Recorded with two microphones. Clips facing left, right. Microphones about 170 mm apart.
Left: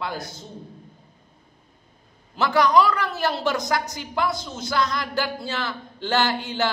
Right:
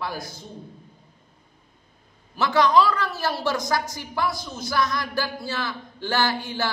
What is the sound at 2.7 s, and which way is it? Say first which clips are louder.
A man's voice: left 1 dB; 20° left (ahead or behind).